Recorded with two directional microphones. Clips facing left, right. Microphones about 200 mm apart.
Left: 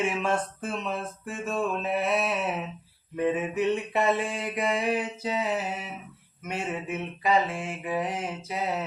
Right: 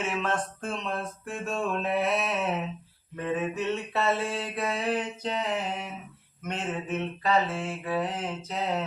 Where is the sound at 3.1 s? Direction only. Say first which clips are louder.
Left 3 dB; 15° left (ahead or behind).